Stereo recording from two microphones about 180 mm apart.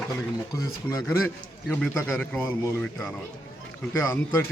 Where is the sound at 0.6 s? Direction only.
20° left (ahead or behind).